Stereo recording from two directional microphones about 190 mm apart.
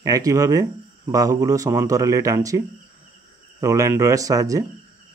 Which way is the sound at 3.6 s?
15° right (ahead or behind).